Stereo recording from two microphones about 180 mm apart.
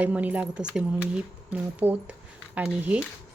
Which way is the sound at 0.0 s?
10° right (ahead or behind).